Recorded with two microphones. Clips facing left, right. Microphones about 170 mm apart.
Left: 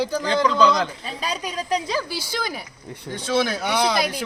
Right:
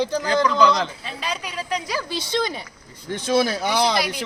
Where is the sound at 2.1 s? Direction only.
20° right (ahead or behind).